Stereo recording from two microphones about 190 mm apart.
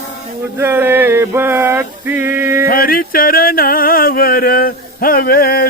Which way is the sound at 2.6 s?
50° left (ahead or behind).